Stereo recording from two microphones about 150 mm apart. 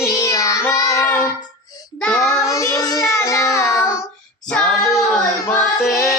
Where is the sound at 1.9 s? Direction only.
5° left (ahead or behind).